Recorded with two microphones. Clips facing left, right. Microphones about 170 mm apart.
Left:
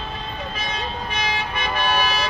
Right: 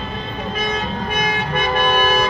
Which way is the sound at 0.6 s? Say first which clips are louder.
Right 7 dB; 50° right (ahead or behind).